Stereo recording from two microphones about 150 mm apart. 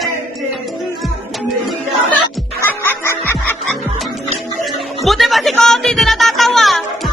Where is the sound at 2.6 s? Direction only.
15° left (ahead or behind).